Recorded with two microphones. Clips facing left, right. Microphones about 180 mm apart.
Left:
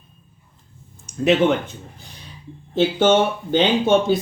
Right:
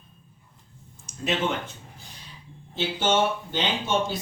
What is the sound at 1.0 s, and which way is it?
Speech, 65° left (ahead or behind).